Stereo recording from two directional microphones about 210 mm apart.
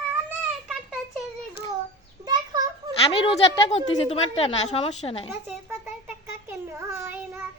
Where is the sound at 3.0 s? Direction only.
25° left (ahead or behind).